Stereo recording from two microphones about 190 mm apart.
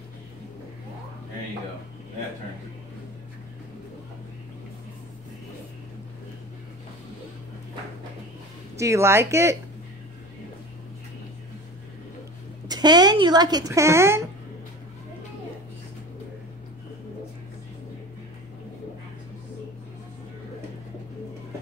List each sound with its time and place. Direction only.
8.7 s speech: 15° right (ahead or behind)
12.6 s speech: 20° right (ahead or behind)